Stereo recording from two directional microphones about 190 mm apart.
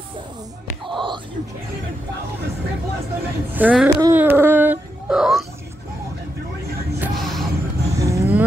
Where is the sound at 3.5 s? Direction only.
10° right (ahead or behind).